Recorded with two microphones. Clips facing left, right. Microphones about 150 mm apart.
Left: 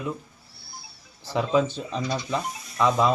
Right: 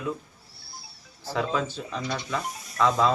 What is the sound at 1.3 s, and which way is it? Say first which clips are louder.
A man's voice: left 5 dB; 20° left (ahead or behind).